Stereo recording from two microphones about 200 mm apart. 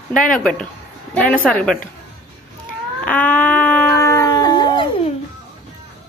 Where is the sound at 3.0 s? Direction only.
10° left (ahead or behind).